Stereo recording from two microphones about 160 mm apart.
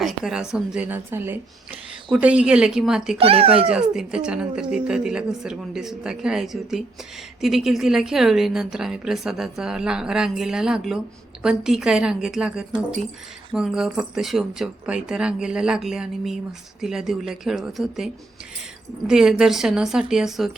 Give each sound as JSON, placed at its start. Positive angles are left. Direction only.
{"t": 0.0, "sound": "a woman's voice", "side_deg": -5}
{"t": 3.2, "sound": "speech", "side_deg": -35}
{"t": 3.7, "sound": "speech", "side_deg": -5}